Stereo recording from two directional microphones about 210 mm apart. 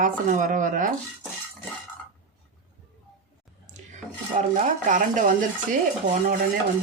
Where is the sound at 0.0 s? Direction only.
40° right (ahead or behind).